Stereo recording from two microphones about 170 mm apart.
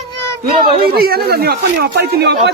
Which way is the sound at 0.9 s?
65° right (ahead or behind).